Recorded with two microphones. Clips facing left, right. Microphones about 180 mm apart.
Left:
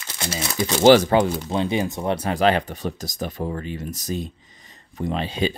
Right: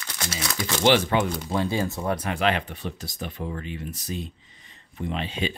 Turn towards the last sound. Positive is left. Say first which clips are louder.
# left 5 dB
turn(degrees=35)  # may be behind; listen again after turning